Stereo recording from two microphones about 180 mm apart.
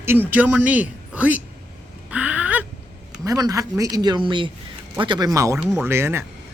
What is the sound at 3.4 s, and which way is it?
Speech, 20° right (ahead or behind).